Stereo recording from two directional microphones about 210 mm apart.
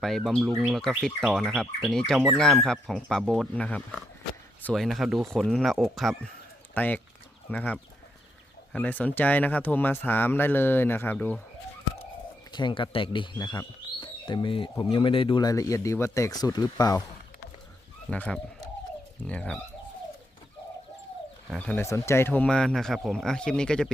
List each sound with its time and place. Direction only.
0.0 s speech: centre (ahead or behind)
12.5 s speech: 20° left (ahead or behind)
18.1 s speech: 5° left (ahead or behind)
21.5 s speech: 10° left (ahead or behind)